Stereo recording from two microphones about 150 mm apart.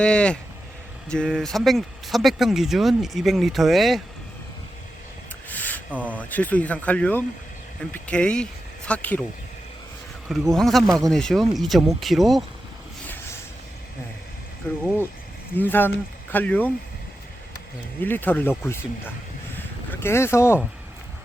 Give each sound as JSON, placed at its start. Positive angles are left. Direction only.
{"t": 0.0, "sound": "speech", "side_deg": 5}
{"t": 5.5, "sound": "speech", "side_deg": 10}
{"t": 10.5, "sound": "speech", "side_deg": 0}
{"t": 14.6, "sound": "speech", "side_deg": 15}
{"t": 18.0, "sound": "speech", "side_deg": 10}
{"t": 19.5, "sound": "a sound", "side_deg": 15}